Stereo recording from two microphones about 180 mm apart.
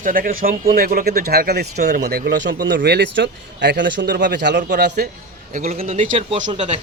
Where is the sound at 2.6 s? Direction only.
65° right (ahead or behind).